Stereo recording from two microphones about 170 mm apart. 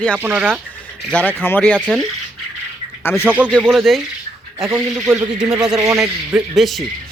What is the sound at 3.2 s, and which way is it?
Speech, 10° right (ahead or behind).